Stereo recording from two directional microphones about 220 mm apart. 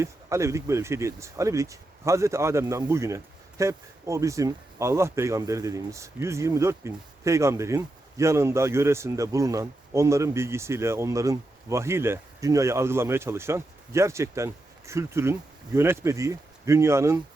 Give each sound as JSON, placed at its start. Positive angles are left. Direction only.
{"t": 0.0, "sound": "speech", "side_deg": -15}